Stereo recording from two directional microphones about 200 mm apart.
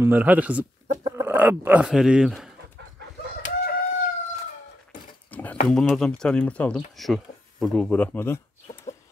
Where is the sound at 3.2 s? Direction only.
55° left (ahead or behind).